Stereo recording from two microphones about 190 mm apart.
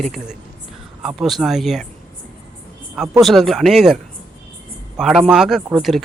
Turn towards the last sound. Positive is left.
turn(degrees=0)  # may be behind; listen again after turning